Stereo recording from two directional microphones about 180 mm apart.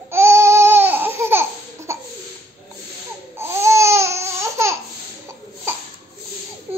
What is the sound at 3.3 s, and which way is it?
Babbling, 15° right (ahead or behind).